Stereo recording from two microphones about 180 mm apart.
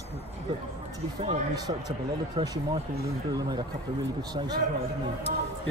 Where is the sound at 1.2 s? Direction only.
25° right (ahead or behind).